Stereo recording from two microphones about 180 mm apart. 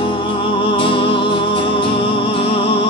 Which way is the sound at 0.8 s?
30° left (ahead or behind).